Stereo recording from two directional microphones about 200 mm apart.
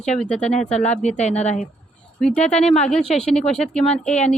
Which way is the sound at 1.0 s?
35° left (ahead or behind).